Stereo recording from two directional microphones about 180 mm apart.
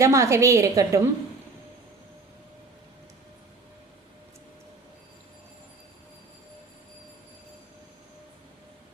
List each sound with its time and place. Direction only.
0.0 s a woman's voice: 15° right (ahead or behind)